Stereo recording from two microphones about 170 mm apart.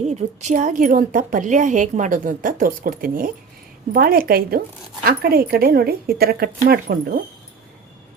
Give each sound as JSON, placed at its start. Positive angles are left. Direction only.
{"t": 0.1, "sound": "a woman's voice", "side_deg": -40}